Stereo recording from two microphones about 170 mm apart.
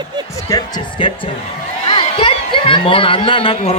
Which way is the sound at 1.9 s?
30° left (ahead or behind).